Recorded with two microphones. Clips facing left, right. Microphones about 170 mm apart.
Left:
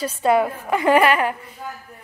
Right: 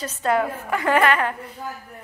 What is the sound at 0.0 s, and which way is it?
A woman's voice, 10° left (ahead or behind).